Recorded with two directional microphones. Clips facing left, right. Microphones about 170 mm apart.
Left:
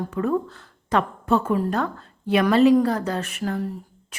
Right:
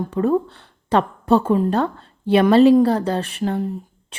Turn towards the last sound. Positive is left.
turn(degrees=-25)  # may be behind; listen again after turning